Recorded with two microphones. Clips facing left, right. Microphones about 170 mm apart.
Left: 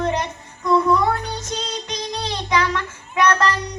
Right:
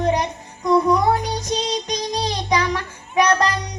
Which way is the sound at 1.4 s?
15° right (ahead or behind).